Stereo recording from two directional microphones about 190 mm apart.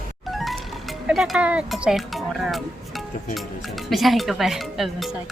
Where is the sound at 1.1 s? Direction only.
5° right (ahead or behind).